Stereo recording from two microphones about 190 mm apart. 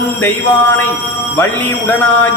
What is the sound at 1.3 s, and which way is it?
Speech, 10° left (ahead or behind).